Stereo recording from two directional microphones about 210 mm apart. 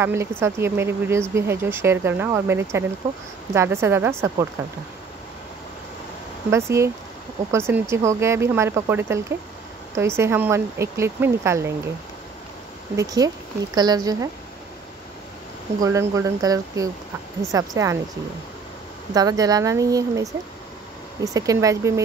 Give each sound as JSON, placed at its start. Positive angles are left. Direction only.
{"t": 0.0, "sound": "speech", "side_deg": -10}
{"t": 6.5, "sound": "speech", "side_deg": -15}
{"t": 12.9, "sound": "a woman's voice", "side_deg": -15}
{"t": 15.8, "sound": "speech", "side_deg": -15}
{"t": 19.1, "sound": "speech", "side_deg": -15}